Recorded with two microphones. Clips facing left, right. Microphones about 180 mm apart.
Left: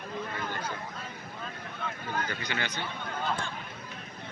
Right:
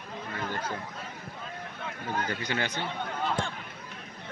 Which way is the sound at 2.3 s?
40° right (ahead or behind).